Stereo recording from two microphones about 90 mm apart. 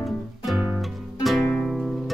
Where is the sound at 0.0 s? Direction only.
Centre (ahead or behind).